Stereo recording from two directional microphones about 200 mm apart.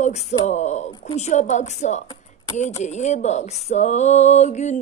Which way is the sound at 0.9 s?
25° left (ahead or behind).